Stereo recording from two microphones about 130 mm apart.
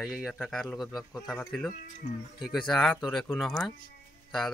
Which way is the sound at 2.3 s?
Centre (ahead or behind).